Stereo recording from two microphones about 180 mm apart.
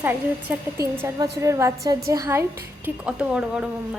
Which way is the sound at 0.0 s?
10° right (ahead or behind).